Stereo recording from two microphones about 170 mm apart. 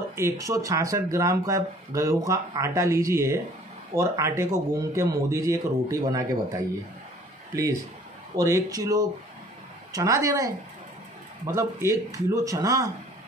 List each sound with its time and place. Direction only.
0.1 s speech: 15° right (ahead or behind)